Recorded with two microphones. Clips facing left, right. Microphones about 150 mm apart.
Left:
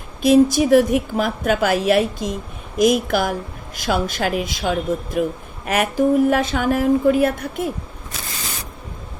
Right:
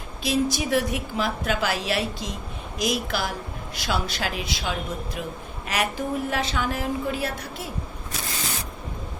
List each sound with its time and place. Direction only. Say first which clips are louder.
0.2 s a woman's voice: left 11 dB; 50° left (ahead or behind)